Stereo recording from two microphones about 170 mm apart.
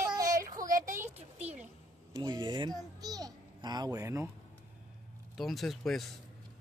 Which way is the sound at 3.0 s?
20° right (ahead or behind).